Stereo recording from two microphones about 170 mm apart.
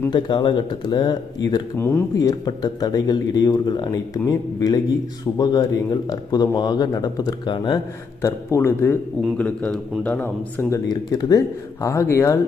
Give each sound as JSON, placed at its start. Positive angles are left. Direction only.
{"t": 0.1, "sound": "speech", "side_deg": 25}
{"t": 1.8, "sound": "speech", "side_deg": 15}
{"t": 8.3, "sound": "a man's voice", "side_deg": 15}
{"t": 10.9, "sound": "speech", "side_deg": 25}